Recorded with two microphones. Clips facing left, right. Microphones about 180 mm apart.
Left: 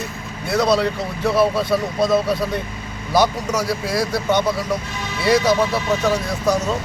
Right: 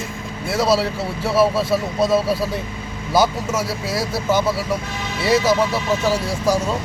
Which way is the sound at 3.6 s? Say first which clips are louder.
Left 2 dB; 5° right (ahead or behind).